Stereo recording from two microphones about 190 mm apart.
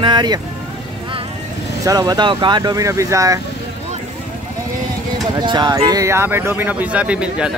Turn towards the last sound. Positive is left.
turn(degrees=-5)  # may be behind; listen again after turning